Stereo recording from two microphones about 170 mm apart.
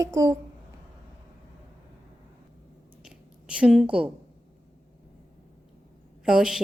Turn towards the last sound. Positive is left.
turn(degrees=-5)  # may be behind; listen again after turning